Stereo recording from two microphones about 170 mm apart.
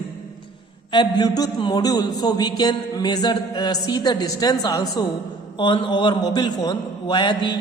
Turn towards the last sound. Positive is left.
turn(degrees=25)  # may be behind; listen again after turning